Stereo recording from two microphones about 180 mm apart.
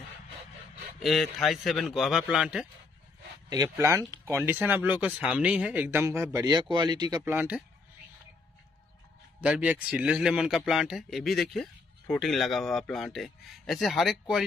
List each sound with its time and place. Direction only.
0.9 s speech: centre (ahead or behind)
3.4 s speech: 20° right (ahead or behind)
9.4 s speech: 5° right (ahead or behind)